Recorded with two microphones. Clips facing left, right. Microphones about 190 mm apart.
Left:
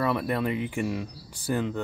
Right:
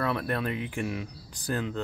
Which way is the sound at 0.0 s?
10° left (ahead or behind).